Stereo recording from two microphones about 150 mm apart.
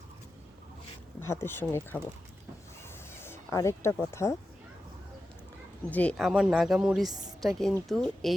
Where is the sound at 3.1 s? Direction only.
15° left (ahead or behind).